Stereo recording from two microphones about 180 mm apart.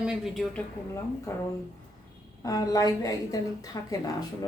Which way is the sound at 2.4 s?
20° left (ahead or behind).